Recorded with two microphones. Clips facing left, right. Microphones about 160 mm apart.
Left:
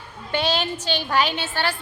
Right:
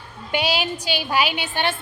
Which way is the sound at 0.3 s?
10° right (ahead or behind).